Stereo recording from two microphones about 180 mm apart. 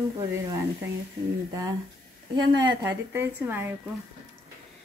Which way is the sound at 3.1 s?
10° right (ahead or behind).